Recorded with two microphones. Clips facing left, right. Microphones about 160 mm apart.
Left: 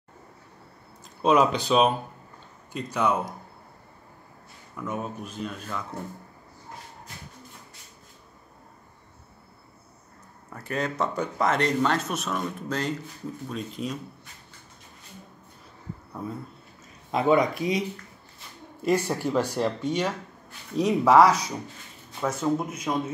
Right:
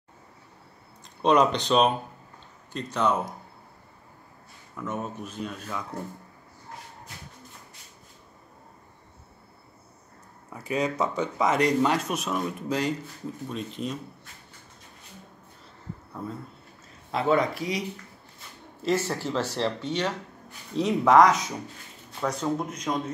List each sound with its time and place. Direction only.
1.2 s speech: 5° left (ahead or behind)
4.7 s speech: centre (ahead or behind)
10.5 s speech: 5° right (ahead or behind)
16.1 s speech: 10° left (ahead or behind)